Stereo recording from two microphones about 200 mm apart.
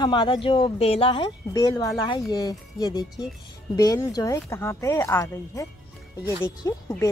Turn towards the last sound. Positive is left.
turn(degrees=15)  # may be behind; listen again after turning